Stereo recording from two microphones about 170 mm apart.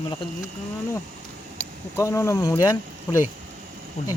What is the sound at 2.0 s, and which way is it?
Speech, 20° left (ahead or behind).